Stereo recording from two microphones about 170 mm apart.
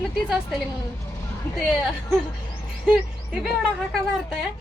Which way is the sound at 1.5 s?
Centre (ahead or behind).